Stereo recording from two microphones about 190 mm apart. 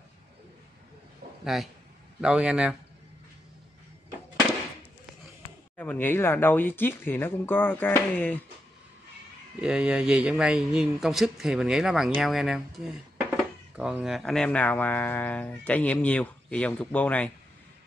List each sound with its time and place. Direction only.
1.4 s a man's voice: centre (ahead or behind)
5.8 s speech: 10° left (ahead or behind)
9.6 s speech: 5° right (ahead or behind)